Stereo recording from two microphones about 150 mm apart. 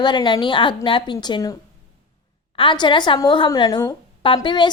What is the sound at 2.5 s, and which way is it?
A woman's voice, 30° left (ahead or behind).